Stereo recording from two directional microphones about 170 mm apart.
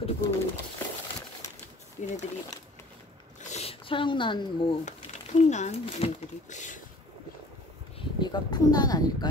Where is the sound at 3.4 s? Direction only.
40° left (ahead or behind).